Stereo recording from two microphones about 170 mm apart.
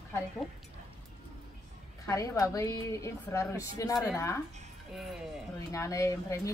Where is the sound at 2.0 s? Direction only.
20° left (ahead or behind).